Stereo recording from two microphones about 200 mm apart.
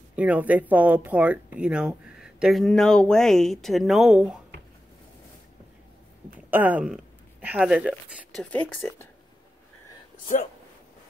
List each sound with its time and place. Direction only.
0.1 s speech: 5° right (ahead or behind)
6.5 s speech: 10° right (ahead or behind); by 9.0 s 10° left (ahead or behind)